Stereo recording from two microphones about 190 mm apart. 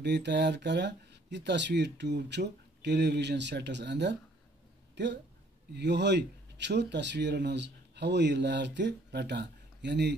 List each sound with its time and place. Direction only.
0.0 s speech: 65° right (ahead or behind)